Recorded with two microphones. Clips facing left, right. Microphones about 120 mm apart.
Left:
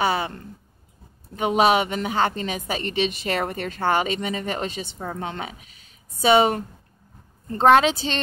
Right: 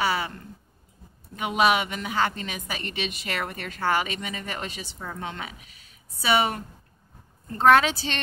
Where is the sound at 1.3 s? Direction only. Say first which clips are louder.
Left 4 dB; 30° left (ahead or behind).